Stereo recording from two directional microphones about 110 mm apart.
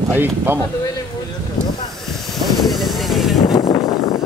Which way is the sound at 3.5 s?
30° left (ahead or behind).